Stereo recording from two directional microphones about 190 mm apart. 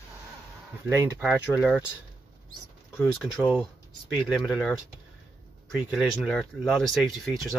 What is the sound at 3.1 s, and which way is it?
Speech, centre (ahead or behind).